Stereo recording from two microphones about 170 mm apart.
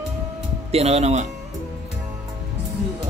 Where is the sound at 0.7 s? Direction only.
40° right (ahead or behind).